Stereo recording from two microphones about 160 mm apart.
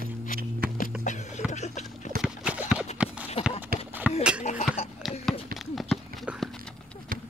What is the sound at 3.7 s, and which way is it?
Run, 70° right (ahead or behind).